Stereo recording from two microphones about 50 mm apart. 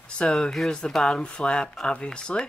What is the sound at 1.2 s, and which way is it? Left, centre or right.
Speech, centre.